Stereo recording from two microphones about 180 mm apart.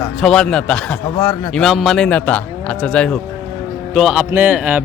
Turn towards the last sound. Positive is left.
turn(degrees=-10)  # may be behind; listen again after turning